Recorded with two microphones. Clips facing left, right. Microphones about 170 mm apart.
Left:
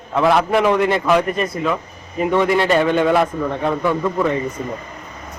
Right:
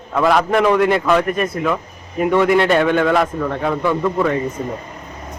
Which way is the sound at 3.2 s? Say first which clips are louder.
Even; centre (ahead or behind).